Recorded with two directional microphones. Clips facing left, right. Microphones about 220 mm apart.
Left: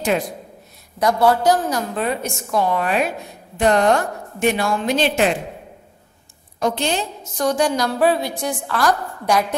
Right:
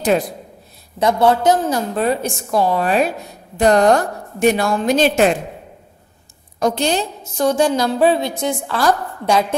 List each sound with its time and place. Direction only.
0.9 s a woman's voice: 25° right (ahead or behind); by 5.3 s 45° right (ahead or behind)
6.6 s a woman's voice: 40° right (ahead or behind)
7.3 s a woman's voice: 25° right (ahead or behind)